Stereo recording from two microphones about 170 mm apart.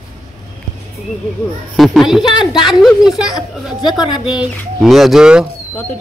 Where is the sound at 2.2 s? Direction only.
25° left (ahead or behind).